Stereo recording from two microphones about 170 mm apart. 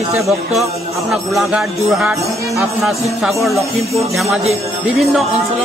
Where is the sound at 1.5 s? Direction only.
5° right (ahead or behind).